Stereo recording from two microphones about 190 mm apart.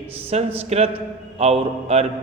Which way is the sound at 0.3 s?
30° right (ahead or behind).